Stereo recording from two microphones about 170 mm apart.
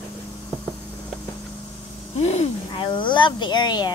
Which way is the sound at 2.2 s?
35° left (ahead or behind).